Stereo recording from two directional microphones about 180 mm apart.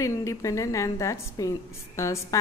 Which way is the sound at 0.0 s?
15° left (ahead or behind).